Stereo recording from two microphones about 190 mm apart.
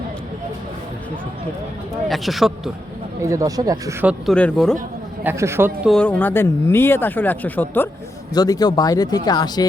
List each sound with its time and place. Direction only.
2.0 s speech: centre (ahead or behind)
3.2 s speech: 15° right (ahead or behind)
4.0 s speech: 5° left (ahead or behind)
5.2 s speech: 15° right (ahead or behind)
5.9 s speech: 5° left (ahead or behind)
8.3 s speech: 20° left (ahead or behind)